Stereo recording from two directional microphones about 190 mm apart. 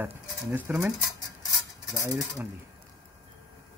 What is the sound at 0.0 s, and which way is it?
Speech, 10° right (ahead or behind).